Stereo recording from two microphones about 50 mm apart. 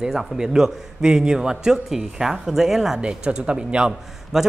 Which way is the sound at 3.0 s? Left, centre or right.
Right.